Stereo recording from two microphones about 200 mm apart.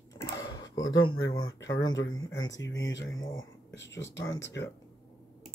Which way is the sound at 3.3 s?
60° left (ahead or behind).